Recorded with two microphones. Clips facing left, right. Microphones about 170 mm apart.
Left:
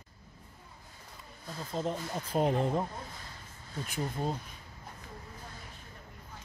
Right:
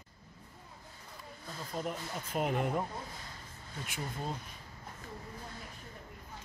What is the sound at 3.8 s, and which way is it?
Speech, 35° left (ahead or behind).